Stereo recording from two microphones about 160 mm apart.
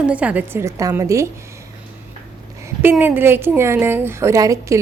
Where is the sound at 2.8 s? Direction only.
15° right (ahead or behind).